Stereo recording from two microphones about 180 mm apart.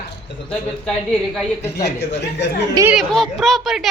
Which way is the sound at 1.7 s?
65° left (ahead or behind).